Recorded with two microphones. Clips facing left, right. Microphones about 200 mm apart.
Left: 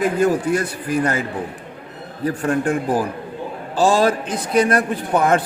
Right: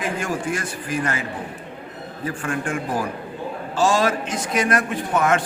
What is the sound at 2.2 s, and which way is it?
A man's voice, 40° left (ahead or behind).